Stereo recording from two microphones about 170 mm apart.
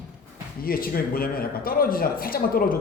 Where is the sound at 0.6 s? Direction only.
60° left (ahead or behind).